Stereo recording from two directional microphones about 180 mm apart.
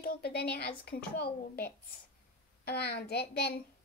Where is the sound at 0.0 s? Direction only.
60° left (ahead or behind).